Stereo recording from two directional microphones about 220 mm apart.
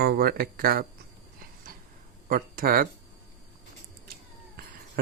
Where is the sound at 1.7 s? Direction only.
40° right (ahead or behind).